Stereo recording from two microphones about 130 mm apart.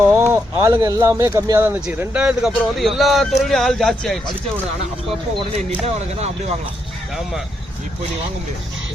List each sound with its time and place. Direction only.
0.0 s speech: 15° right (ahead or behind); by 4.2 s 5° left (ahead or behind)
5.8 s speech: 55° right (ahead or behind)